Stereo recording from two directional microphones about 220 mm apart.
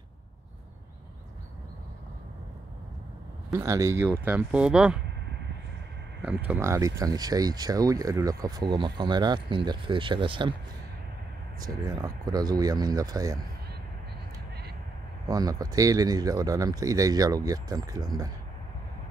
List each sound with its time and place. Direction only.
3.5 s speech: 15° right (ahead or behind)
6.2 s speech: 5° right (ahead or behind)
11.6 s speech: 15° right (ahead or behind)
15.2 s speech: 15° right (ahead or behind)